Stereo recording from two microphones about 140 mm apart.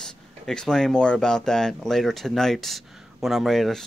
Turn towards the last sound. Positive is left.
turn(degrees=0)  # may be behind; listen again after turning